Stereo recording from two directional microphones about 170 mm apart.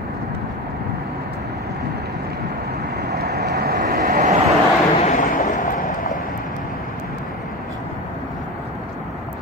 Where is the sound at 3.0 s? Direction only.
70° right (ahead or behind).